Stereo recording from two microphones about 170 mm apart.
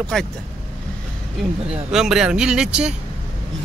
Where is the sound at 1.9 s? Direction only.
5° right (ahead or behind).